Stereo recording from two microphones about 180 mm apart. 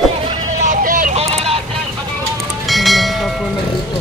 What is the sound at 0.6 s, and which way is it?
Vehicle, 50° right (ahead or behind).